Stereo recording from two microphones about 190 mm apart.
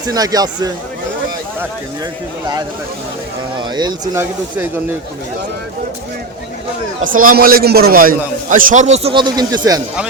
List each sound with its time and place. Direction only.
0.1 s a man's voice: 20° right (ahead or behind)
3.6 s speech: 20° right (ahead or behind)
7.0 s a man's voice: 45° right (ahead or behind); by 9.8 s 20° right (ahead or behind)